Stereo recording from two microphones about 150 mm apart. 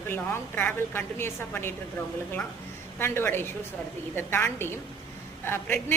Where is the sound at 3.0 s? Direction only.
15° left (ahead or behind).